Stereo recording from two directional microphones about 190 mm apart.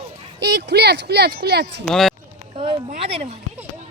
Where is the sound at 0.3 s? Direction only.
65° right (ahead or behind).